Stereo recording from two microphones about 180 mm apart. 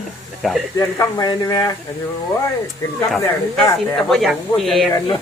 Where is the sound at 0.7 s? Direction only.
20° left (ahead or behind).